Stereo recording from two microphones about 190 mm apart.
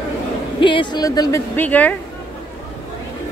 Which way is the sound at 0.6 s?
25° left (ahead or behind).